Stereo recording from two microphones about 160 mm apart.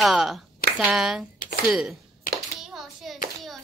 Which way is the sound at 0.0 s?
Centre (ahead or behind).